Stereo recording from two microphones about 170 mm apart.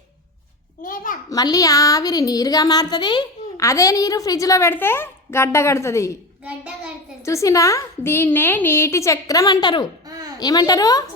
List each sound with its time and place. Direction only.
0.8 s a sound: 50° left (ahead or behind)
1.3 s speech: 20° left (ahead or behind)
7.3 s a woman's voice: 20° left (ahead or behind)
10.1 s babbling: 20° right (ahead or behind)
10.4 s speech: 20° left (ahead or behind)